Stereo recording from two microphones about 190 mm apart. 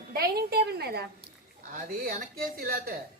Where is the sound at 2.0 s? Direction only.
50° right (ahead or behind).